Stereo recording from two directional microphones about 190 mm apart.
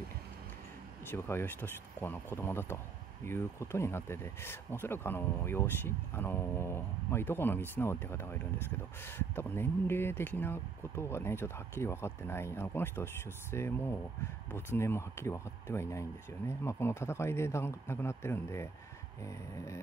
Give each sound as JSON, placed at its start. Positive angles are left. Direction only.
{"t": 1.1, "sound": "speech", "side_deg": 15}